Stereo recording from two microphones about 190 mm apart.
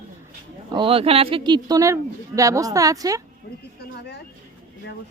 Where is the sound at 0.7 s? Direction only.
25° right (ahead or behind).